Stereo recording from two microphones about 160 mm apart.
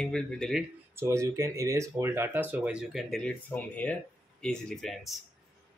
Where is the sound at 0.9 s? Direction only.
15° right (ahead or behind).